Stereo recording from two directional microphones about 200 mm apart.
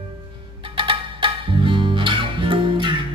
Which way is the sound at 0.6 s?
25° right (ahead or behind).